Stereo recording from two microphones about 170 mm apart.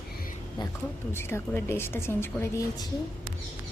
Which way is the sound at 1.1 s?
15° left (ahead or behind).